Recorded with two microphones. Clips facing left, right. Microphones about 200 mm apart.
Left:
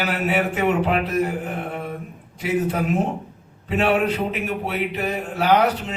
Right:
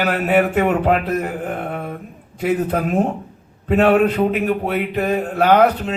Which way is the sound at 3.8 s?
55° right (ahead or behind).